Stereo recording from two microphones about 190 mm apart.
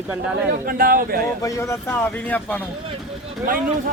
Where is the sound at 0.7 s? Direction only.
50° right (ahead or behind).